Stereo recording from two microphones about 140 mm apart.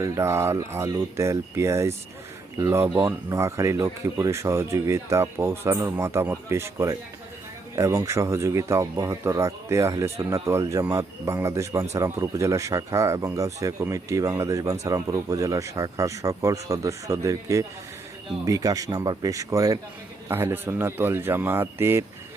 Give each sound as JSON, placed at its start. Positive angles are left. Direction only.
{"t": 0.0, "sound": "speech", "side_deg": -20}